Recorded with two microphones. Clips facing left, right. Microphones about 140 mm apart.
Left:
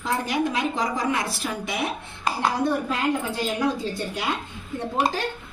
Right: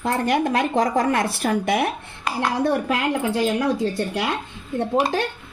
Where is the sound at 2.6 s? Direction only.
70° right (ahead or behind).